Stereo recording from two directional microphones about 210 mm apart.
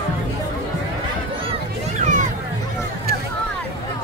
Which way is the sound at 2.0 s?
35° right (ahead or behind).